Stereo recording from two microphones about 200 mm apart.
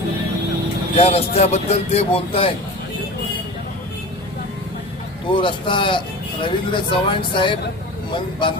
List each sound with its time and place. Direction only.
0.9 s speech: 30° left (ahead or behind)
5.3 s speech: 25° left (ahead or behind)